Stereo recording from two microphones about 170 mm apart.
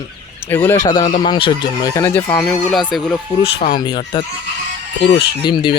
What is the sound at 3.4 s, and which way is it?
Speech, 30° left (ahead or behind).